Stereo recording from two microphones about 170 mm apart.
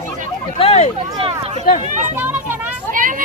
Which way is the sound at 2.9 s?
50° right (ahead or behind).